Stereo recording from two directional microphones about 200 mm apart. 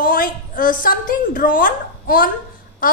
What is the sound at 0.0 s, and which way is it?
A woman's voice, 45° left (ahead or behind).